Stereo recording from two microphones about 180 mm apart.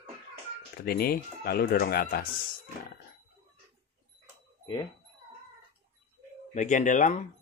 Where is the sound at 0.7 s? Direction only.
55° left (ahead or behind).